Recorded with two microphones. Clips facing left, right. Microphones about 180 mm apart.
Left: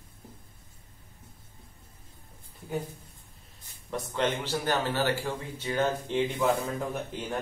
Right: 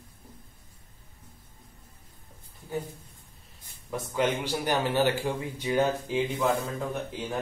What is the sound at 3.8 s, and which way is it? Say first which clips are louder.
Speech: right 2 dB; centre (ahead or behind).